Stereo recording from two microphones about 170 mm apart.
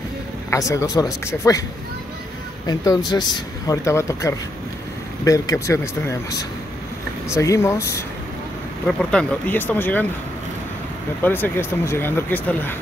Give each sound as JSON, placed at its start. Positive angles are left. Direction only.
{"t": 0.5, "sound": "speech", "side_deg": 20}
{"t": 2.6, "sound": "speech", "side_deg": 20}
{"t": 11.2, "sound": "speech", "side_deg": 10}